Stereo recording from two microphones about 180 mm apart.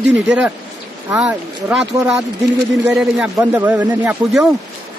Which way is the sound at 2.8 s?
5° right (ahead or behind).